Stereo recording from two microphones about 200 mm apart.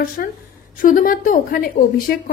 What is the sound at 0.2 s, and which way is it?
A woman's voice, 45° left (ahead or behind).